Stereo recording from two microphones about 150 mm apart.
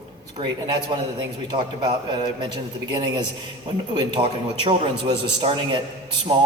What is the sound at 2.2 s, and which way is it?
A man's voice, 30° right (ahead or behind).